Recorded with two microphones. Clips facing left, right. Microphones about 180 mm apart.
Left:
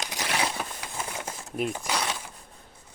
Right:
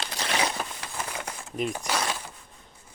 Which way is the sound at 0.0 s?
15° left (ahead or behind).